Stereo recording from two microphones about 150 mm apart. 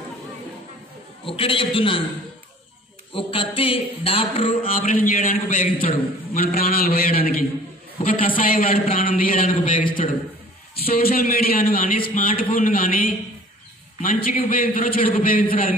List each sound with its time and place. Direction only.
1.2 s speech: 35° left (ahead or behind)
3.1 s speech: 40° left (ahead or behind)
4.7 s a man's voice: 65° left (ahead or behind)
5.9 s a man's voice: 80° left
8.0 s a man's voice: 65° left (ahead or behind)
10.0 s a man's voice: 55° left (ahead or behind)
10.9 s a man's voice: 75° left (ahead or behind)